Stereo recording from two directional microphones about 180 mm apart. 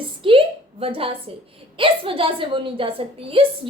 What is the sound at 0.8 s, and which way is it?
A woman's voice, 30° right (ahead or behind).